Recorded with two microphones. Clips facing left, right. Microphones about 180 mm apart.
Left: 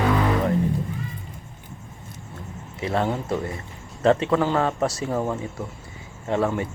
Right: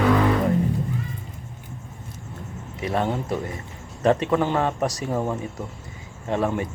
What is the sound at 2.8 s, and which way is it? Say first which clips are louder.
Speech: even; 15° right (ahead or behind).